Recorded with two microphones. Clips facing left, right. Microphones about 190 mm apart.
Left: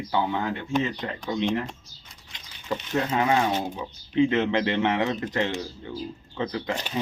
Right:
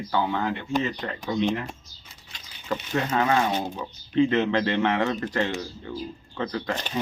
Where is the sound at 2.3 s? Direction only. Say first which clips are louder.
Even; 20° left (ahead or behind).